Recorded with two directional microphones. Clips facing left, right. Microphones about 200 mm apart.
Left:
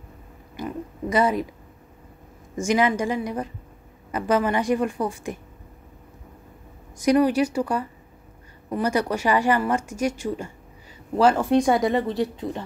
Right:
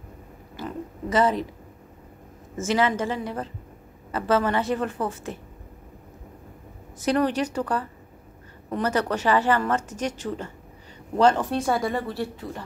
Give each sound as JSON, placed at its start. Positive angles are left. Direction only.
{"t": 0.6, "sound": "oink", "side_deg": 10}
{"t": 2.5, "sound": "speech", "side_deg": 15}
{"t": 7.0, "sound": "speech", "side_deg": 10}